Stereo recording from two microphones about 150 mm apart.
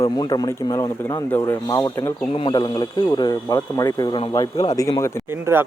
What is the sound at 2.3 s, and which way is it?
Speech, 35° left (ahead or behind).